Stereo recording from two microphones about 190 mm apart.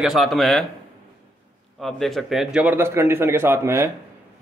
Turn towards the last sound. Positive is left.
turn(degrees=-15)  # may be behind; listen again after turning